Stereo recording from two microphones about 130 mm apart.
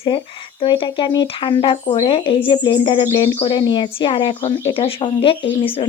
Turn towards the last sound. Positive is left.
turn(degrees=45)  # may be behind; listen again after turning